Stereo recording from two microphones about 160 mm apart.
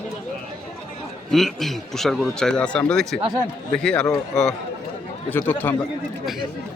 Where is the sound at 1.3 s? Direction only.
Centre (ahead or behind).